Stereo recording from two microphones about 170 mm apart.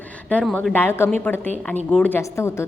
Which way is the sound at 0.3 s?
10° left (ahead or behind).